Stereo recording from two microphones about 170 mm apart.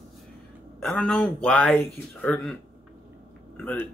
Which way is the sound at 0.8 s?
5° left (ahead or behind).